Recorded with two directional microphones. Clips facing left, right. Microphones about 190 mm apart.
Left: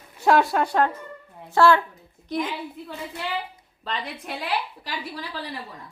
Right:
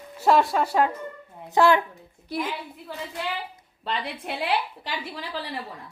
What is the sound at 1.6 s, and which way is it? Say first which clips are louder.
A woman's voice: left 1 dB; 15° right (ahead or behind).